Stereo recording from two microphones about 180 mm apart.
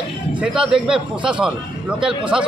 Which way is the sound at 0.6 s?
5° right (ahead or behind).